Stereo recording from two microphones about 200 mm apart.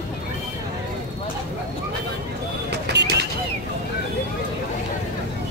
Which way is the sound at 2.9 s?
55° right (ahead or behind).